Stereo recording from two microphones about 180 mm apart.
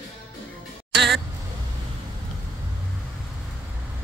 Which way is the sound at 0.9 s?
70° right (ahead or behind).